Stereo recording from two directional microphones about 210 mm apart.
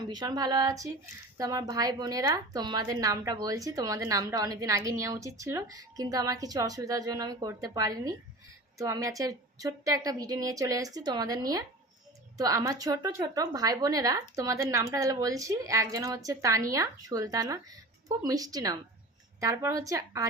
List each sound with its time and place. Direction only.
0.1 s a woman's voice: 20° right (ahead or behind)